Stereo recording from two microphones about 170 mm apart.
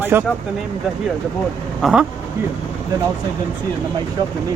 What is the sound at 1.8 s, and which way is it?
Speech, centre (ahead or behind).